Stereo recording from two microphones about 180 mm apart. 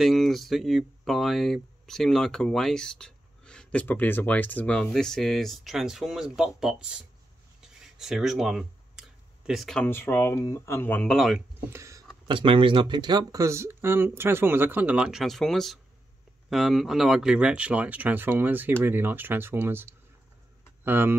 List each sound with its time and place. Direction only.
0.0 s speech: centre (ahead or behind)
7.6 s a sound: centre (ahead or behind)
9.8 s speech: 10° left (ahead or behind)
11.7 s speech: 15° right (ahead or behind)
12.3 s speech: 30° right (ahead or behind); by 21.1 s 10° right (ahead or behind)